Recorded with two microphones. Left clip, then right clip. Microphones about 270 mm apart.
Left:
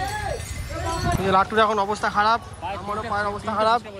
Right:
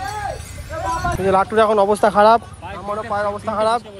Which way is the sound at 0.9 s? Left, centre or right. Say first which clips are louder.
Right 3 dB; centre.